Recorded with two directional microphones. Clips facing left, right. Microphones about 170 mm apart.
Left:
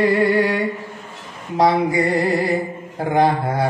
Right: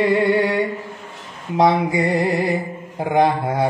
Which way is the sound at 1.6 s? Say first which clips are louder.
Even; 20° right (ahead or behind).